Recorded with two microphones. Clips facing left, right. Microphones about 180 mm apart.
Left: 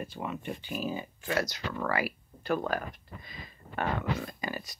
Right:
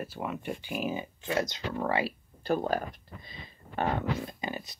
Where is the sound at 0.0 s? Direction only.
5° right (ahead or behind); by 2.8 s 30° right (ahead or behind).